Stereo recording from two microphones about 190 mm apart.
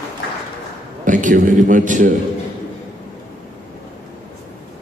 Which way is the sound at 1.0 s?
45° right (ahead or behind).